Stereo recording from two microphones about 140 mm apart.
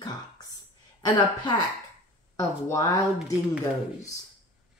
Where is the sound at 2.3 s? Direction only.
25° left (ahead or behind).